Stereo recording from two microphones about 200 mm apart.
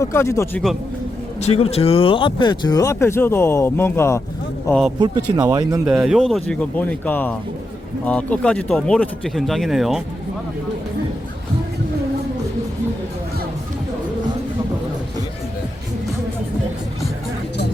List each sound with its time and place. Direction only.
0.0 s speech: 15° left (ahead or behind)
1.4 s speech: 30° left (ahead or behind); by 4.2 s 15° left (ahead or behind)
4.9 s speech: 20° right (ahead or behind)
5.8 s speech: 5° right (ahead or behind)